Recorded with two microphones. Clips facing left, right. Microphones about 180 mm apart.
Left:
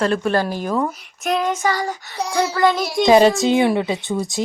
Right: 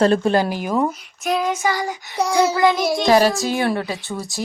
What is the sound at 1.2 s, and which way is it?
Child singing, centre (ahead or behind).